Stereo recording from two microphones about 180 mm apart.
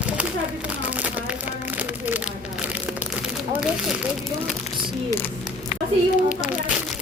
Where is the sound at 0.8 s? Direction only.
10° right (ahead or behind).